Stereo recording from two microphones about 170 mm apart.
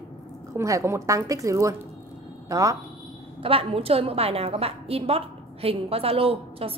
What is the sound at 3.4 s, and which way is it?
A woman's voice, 35° right (ahead or behind).